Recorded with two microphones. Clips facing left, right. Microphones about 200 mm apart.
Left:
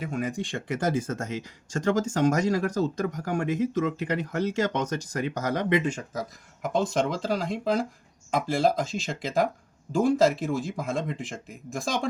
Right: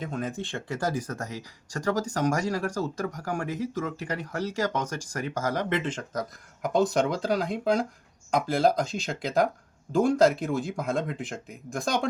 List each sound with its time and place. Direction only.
0.0 s speech: 10° left (ahead or behind)